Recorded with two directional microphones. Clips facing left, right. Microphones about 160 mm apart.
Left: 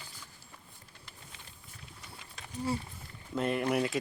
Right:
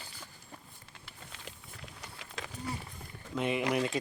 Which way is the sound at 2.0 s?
90° right.